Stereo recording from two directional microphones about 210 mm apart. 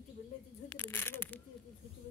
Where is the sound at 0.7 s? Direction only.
10° left (ahead or behind).